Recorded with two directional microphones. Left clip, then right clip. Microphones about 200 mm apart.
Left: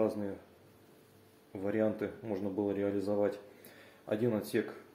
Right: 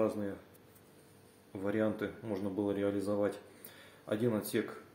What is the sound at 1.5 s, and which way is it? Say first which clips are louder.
Speech: left 1 dB; 5° right (ahead or behind).